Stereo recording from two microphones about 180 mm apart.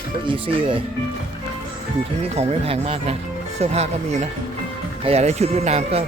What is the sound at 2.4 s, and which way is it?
Speech, 35° right (ahead or behind).